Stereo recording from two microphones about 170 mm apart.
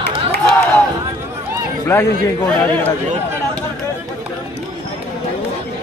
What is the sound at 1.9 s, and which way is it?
Speech, 20° left (ahead or behind).